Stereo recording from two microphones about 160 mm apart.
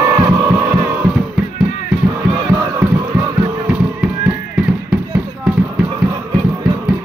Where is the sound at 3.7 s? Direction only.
5° right (ahead or behind).